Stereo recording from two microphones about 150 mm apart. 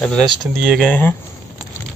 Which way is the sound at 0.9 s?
10° left (ahead or behind).